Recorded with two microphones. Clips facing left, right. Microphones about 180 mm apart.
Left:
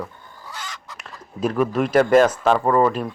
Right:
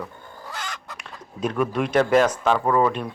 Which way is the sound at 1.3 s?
Centre (ahead or behind).